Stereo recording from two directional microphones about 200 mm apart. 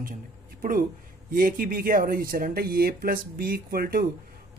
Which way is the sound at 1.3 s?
45° right (ahead or behind).